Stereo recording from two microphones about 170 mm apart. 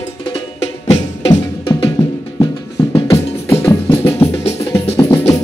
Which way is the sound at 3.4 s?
15° left (ahead or behind).